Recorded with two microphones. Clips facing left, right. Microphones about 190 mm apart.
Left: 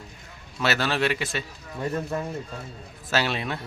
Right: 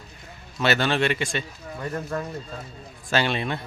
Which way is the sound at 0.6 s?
Centre (ahead or behind).